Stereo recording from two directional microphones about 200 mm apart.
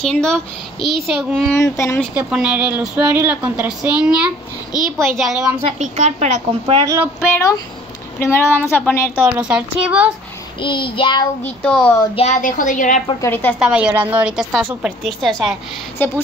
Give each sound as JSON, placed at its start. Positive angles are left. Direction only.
{"t": 0.0, "sound": "a woman's voice", "side_deg": 5}
{"t": 1.5, "sound": "a woman's voice", "side_deg": 15}
{"t": 2.1, "sound": "a woman's voice", "side_deg": -5}
{"t": 5.6, "sound": "a woman's voice", "side_deg": -30}
{"t": 7.2, "sound": "a woman's voice", "side_deg": 15}
{"t": 9.2, "sound": "a woman's voice", "side_deg": -5}
{"t": 10.6, "sound": "child singing", "side_deg": 25}
{"t": 11.4, "sound": "a woman's voice", "side_deg": 5}
{"t": 12.2, "sound": "a woman's voice", "side_deg": 35}
{"t": 13.2, "sound": "a woman's voice", "side_deg": 10}
{"t": 13.6, "sound": "a woman's voice", "side_deg": -5}